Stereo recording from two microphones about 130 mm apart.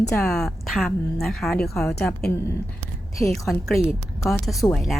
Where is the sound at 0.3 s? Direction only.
5° left (ahead or behind).